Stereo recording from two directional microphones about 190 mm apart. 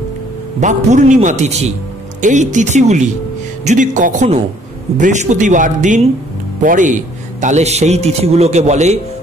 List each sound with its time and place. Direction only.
0.6 s a man's voice: 40° right (ahead or behind)